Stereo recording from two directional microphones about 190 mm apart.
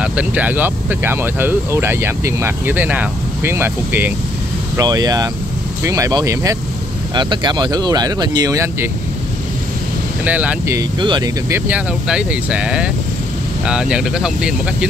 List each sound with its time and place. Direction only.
0.0 s speech: 5° right (ahead or behind)
10.2 s speech: 10° right (ahead or behind)
10.8 s speech: 25° right (ahead or behind); by 14.9 s 5° right (ahead or behind)